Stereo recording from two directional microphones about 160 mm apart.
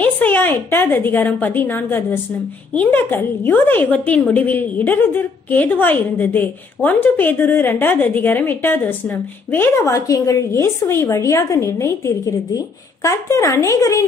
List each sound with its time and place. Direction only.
0.0 s a woman's voice: 10° left (ahead or behind)